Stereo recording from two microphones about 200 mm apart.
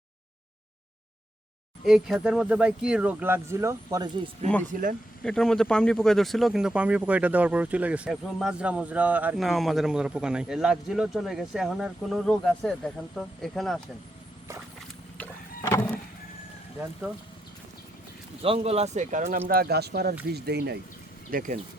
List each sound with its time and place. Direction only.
1.8 s speech: centre (ahead or behind)
4.7 s speech: 40° right (ahead or behind)
5.2 s speech: 5° left (ahead or behind)
15.2 s printer: 10° left (ahead or behind)
18.4 s speech: 30° right (ahead or behind)
19.5 s speech: 50° right (ahead or behind)
21.2 s speech: 45° right (ahead or behind)